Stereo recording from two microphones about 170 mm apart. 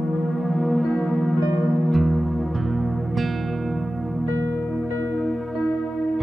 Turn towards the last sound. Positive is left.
turn(degrees=5)  # may be behind; listen again after turning